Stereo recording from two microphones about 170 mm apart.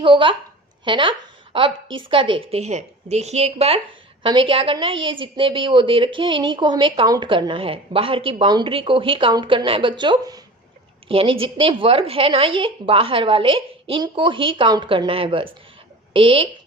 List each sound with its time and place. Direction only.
0.0 s a woman's voice: 30° right (ahead or behind)